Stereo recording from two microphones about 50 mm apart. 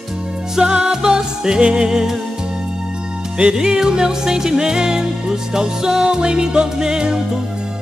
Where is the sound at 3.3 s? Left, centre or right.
Centre.